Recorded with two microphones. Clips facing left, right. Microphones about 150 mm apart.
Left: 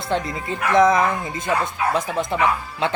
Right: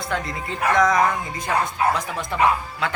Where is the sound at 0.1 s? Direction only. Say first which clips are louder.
Left 5 dB; 25° left (ahead or behind).